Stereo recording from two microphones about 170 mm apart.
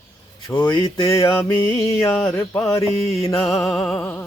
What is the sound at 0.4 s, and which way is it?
Music, 20° left (ahead or behind).